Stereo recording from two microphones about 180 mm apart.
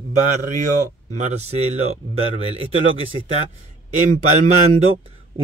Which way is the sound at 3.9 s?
40° right (ahead or behind).